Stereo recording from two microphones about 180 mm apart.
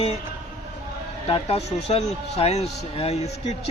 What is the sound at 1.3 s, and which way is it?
Speech, 35° left (ahead or behind).